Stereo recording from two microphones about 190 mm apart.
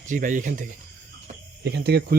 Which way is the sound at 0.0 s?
40° right (ahead or behind).